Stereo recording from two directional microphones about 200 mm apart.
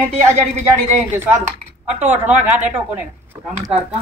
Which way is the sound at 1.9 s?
10° right (ahead or behind).